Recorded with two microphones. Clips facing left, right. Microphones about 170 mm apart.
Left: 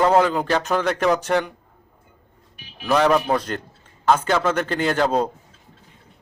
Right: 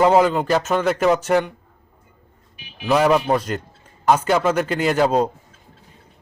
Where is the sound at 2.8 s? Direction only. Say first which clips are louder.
Right 1 dB; 5° right (ahead or behind).